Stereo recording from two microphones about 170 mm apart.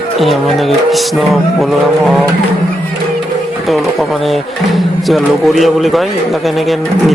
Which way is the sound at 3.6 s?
Centre (ahead or behind).